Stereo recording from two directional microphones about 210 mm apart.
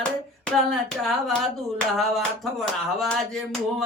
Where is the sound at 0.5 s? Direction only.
Centre (ahead or behind).